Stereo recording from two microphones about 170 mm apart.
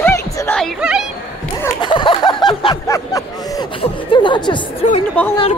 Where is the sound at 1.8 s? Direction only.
30° left (ahead or behind).